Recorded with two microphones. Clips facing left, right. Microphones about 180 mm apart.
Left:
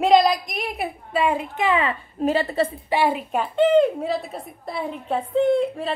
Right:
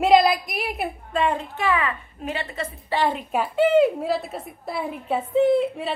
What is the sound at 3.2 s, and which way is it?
A woman's voice, 5° right (ahead or behind).